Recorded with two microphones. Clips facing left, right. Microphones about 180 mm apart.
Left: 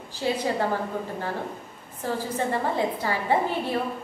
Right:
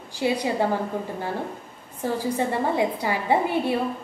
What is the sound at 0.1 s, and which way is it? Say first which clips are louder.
Speech: right 2 dB; 15° right (ahead or behind).